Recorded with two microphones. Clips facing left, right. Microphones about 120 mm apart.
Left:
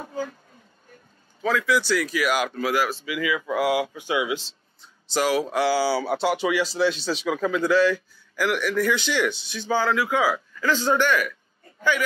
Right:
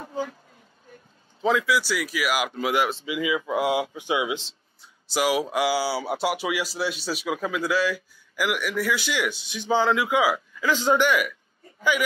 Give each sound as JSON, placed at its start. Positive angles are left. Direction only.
{"t": 1.4, "sound": "speech", "side_deg": -20}
{"t": 1.7, "sound": "speech", "side_deg": -10}
{"t": 2.5, "sound": "speech", "side_deg": -20}
{"t": 5.0, "sound": "speech", "side_deg": -10}